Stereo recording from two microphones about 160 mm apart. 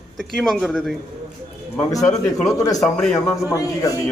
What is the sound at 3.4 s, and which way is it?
Speech, 20° left (ahead or behind).